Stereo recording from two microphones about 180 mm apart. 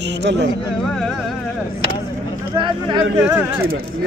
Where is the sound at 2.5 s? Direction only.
25° right (ahead or behind).